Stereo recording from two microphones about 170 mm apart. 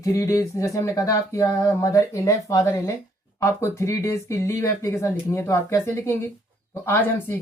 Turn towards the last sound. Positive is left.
turn(degrees=15)  # may be behind; listen again after turning